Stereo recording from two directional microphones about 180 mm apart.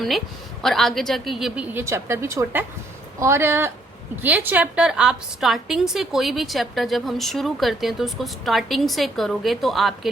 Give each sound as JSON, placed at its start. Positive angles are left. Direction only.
{"t": 0.6, "sound": "a woman's voice", "side_deg": 0}
{"t": 1.7, "sound": "a woman's voice", "side_deg": -15}